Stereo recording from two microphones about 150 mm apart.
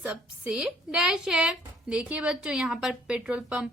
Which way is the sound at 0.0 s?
5° right (ahead or behind).